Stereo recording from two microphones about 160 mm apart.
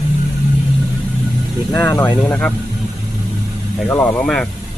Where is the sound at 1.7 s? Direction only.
15° left (ahead or behind).